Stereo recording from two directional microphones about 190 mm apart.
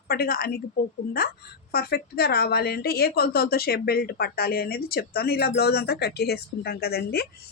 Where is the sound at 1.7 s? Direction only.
55° left (ahead or behind).